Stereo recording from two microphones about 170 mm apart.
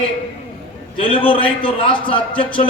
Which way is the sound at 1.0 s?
30° left (ahead or behind).